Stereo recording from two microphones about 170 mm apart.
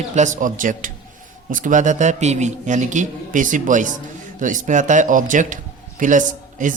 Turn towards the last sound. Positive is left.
turn(degrees=-50)  # may be behind; listen again after turning